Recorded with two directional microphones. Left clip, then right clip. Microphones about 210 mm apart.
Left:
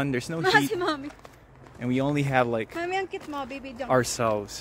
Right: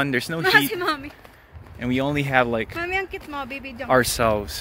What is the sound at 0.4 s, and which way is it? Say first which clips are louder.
Speech: right 3 dB; 20° left (ahead or behind).